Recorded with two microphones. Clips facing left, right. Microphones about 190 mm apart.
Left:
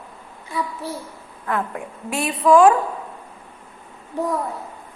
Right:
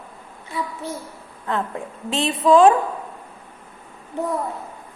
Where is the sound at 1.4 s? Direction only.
25° right (ahead or behind).